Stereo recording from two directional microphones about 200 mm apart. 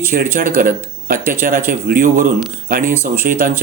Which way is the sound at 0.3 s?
45° right (ahead or behind).